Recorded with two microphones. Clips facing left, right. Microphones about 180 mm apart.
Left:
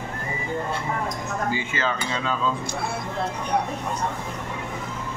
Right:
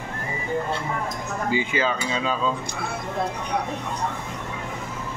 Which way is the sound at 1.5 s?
15° right (ahead or behind).